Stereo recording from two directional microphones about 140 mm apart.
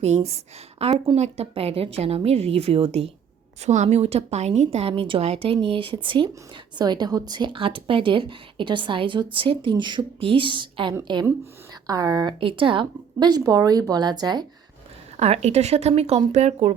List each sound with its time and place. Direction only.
0.0 s a woman's voice: 50° right (ahead or behind)
3.6 s a woman's voice: 55° right (ahead or behind); by 14.4 s 30° right (ahead or behind)
15.2 s a woman's voice: 50° right (ahead or behind)